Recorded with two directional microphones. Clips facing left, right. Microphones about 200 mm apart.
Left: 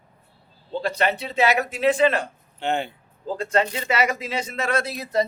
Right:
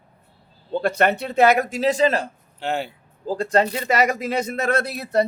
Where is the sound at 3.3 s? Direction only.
35° right (ahead or behind).